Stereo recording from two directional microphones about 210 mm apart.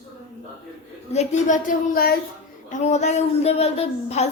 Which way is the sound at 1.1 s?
30° left (ahead or behind).